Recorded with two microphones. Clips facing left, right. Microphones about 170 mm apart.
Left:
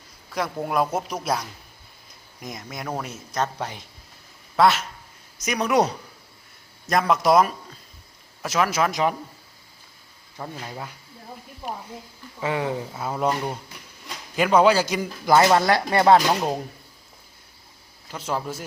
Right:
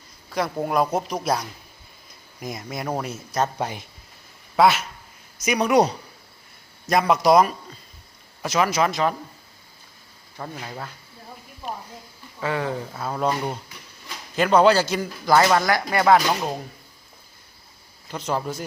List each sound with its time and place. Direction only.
0.5 s speech: centre (ahead or behind)
8.9 s speech: 15° left (ahead or behind)
10.7 s speech: 10° left (ahead or behind)
12.4 s speech: 20° left (ahead or behind)
14.3 s speech: 10° left (ahead or behind)
18.1 s speech: 5° left (ahead or behind)